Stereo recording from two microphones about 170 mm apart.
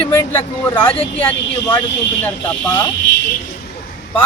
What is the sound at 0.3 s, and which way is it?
A man's voice, 10° left (ahead or behind).